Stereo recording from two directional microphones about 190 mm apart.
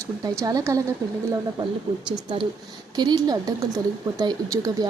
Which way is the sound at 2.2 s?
30° right (ahead or behind).